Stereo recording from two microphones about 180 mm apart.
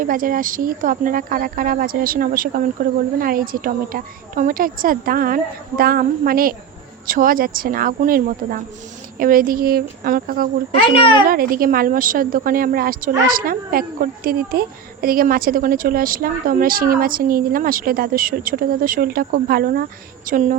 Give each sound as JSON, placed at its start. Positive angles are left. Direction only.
{"t": 0.0, "sound": "a woman's voice", "side_deg": -50}